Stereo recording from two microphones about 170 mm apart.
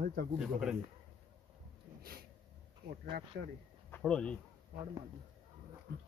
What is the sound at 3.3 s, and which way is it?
Speech, 75° right (ahead or behind).